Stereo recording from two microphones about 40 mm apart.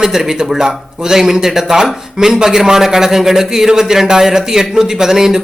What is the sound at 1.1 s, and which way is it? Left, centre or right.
Speech, centre.